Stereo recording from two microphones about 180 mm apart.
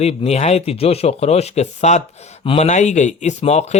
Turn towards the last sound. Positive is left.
turn(degrees=35)  # may be behind; listen again after turning